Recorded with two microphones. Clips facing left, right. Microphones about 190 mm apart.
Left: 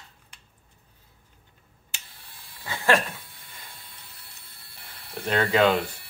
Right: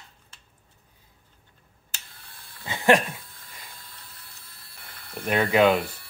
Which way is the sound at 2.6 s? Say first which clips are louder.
Right 3 dB; 20° right (ahead or behind).